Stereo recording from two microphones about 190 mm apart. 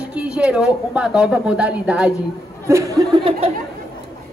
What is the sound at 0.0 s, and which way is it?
Speech, 5° right (ahead or behind).